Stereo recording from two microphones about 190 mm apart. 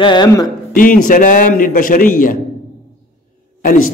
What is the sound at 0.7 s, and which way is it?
A man's voice, 45° left (ahead or behind).